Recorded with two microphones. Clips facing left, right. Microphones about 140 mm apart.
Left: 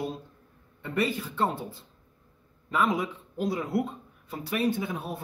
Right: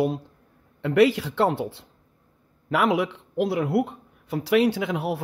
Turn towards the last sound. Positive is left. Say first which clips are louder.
# right 6 dB
turn(degrees=-80)